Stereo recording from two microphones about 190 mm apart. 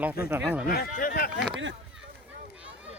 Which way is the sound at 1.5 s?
80° right.